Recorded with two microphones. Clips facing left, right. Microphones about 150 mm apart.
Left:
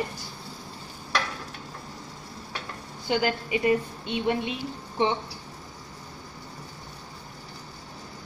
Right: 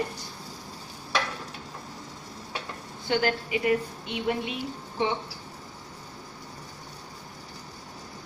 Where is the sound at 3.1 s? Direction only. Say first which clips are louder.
Even; 20° left (ahead or behind).